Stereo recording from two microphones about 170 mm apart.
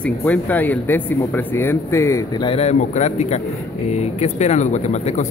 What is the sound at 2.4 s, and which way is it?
Speech, 35° left (ahead or behind).